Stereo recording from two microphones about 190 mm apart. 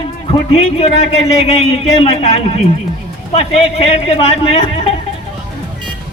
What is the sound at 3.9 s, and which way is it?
Speech, 30° left (ahead or behind).